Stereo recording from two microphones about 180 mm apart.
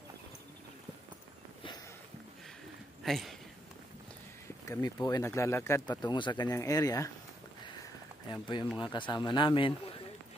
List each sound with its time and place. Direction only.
3.0 s speech: centre (ahead or behind)
4.6 s speech: 20° left (ahead or behind)
8.3 s speech: 25° left (ahead or behind)